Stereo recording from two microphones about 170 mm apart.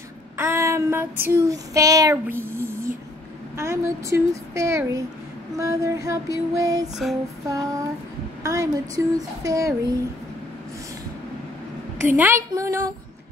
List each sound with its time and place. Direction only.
0.4 s child singing: 15° right (ahead or behind)
3.5 s a woman's voice: 15° right (ahead or behind)
12.1 s a woman's voice: 10° right (ahead or behind)